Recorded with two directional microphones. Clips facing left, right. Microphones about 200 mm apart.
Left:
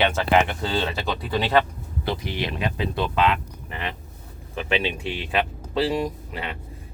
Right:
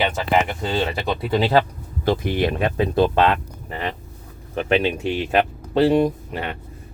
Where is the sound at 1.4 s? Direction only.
35° right (ahead or behind).